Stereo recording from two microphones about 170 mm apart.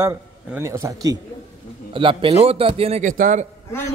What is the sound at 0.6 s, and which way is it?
Speech, 20° right (ahead or behind).